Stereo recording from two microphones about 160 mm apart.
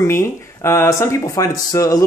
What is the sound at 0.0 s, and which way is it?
Speech, 15° left (ahead or behind).